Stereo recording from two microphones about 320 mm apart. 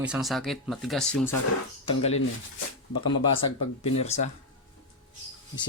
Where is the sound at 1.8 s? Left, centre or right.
Centre.